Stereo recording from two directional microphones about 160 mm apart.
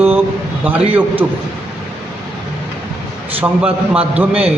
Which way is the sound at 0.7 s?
10° right (ahead or behind).